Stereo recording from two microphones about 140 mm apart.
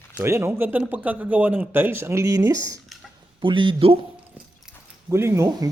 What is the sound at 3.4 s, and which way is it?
Speech, 35° right (ahead or behind).